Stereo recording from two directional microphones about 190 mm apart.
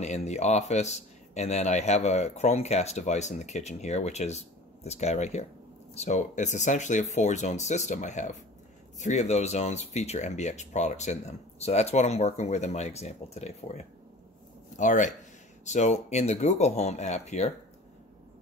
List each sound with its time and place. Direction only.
0.0 s speech: 35° left (ahead or behind)